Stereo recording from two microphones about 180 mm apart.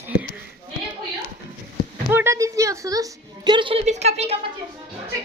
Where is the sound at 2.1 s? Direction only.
15° right (ahead or behind); by 4.3 s 35° right (ahead or behind).